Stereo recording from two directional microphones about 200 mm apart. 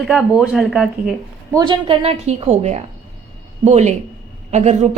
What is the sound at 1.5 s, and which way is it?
A woman's voice, 20° right (ahead or behind).